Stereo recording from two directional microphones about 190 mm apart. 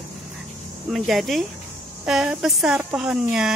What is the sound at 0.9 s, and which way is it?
Speech, centre (ahead or behind).